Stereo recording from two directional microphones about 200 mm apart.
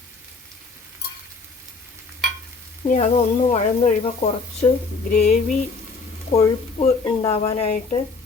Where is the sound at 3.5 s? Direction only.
30° left (ahead or behind).